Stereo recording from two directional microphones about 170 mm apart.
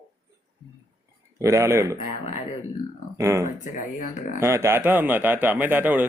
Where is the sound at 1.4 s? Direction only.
15° right (ahead or behind).